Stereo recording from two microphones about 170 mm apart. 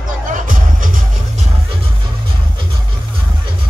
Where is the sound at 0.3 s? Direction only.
50° right (ahead or behind).